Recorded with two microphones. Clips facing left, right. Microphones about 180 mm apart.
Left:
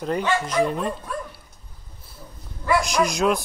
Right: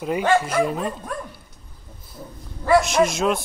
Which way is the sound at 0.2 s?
50° right (ahead or behind).